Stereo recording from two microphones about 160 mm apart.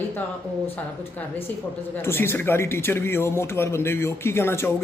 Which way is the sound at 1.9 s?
15° left (ahead or behind).